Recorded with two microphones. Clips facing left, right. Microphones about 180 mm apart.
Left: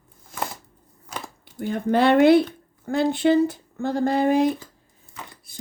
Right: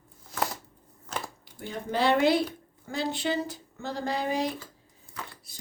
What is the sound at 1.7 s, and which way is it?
Speech, 55° left (ahead or behind).